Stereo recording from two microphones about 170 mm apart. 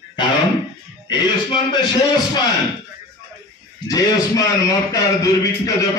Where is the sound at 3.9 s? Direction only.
20° left (ahead or behind).